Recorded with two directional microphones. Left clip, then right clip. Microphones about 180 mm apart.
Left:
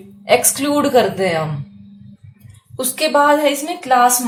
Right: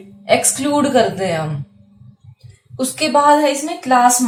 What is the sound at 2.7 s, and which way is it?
Speech, 40° left (ahead or behind).